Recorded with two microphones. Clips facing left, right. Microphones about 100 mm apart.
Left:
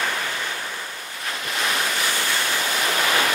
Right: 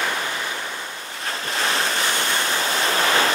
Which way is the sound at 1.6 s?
35° right (ahead or behind).